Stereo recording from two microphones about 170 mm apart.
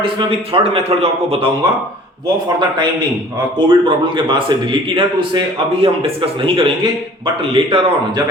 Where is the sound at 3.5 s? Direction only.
30° right (ahead or behind).